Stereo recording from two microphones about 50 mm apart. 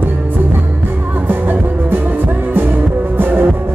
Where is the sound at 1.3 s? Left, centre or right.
Right.